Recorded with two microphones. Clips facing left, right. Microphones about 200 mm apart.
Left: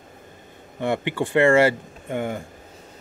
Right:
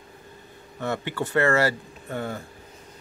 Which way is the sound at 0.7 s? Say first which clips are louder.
Left 4 dB; 20° left (ahead or behind).